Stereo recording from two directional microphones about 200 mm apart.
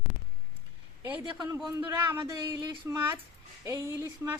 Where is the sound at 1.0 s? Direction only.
10° right (ahead or behind).